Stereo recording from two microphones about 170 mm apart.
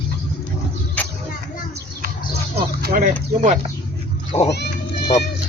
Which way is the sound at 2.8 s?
50° right (ahead or behind).